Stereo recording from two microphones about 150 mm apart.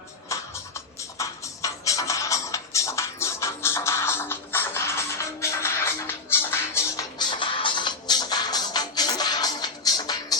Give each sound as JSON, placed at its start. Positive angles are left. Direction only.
{"t": 0.3, "sound": "music", "side_deg": 20}
{"t": 7.2, "sound": "music", "side_deg": 30}